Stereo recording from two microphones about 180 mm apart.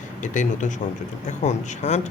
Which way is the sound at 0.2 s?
45° left (ahead or behind).